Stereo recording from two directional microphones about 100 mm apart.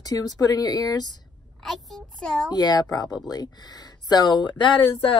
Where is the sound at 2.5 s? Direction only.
40° left (ahead or behind).